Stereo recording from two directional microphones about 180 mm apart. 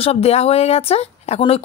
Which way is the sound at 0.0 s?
35° left (ahead or behind).